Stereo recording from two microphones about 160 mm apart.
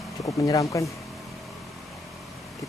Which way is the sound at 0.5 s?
20° left (ahead or behind).